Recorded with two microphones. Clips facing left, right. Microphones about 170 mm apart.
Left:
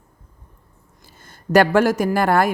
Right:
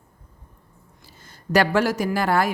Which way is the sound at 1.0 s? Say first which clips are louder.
Left 3 dB; 50° left (ahead or behind).